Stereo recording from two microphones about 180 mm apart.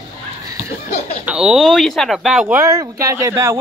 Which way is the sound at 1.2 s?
5° right (ahead or behind).